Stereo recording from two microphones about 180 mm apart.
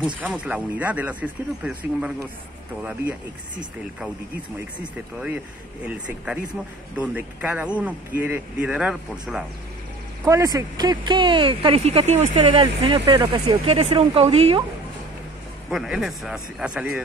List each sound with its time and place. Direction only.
0.0 s speech: 5° right (ahead or behind)
5.9 s speech: 5° right (ahead or behind)
10.2 s speech: 15° right (ahead or behind)
15.7 s speech: centre (ahead or behind)